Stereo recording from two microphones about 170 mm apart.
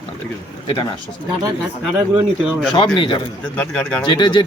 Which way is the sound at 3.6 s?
10° left (ahead or behind).